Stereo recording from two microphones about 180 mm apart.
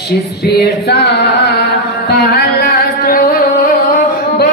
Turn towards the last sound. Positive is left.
turn(degrees=55)  # may be behind; listen again after turning